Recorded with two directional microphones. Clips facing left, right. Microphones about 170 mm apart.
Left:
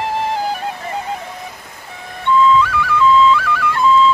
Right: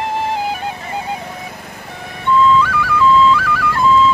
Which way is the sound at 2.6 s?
Centre (ahead or behind).